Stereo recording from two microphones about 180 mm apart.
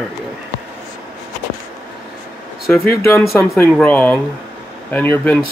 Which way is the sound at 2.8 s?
15° left (ahead or behind).